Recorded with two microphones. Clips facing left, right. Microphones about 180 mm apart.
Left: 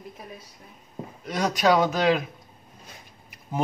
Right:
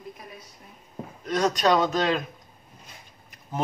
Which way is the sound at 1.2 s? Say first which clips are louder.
Even; 10° left (ahead or behind).